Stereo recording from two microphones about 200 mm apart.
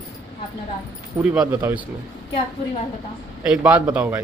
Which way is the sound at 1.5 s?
20° right (ahead or behind).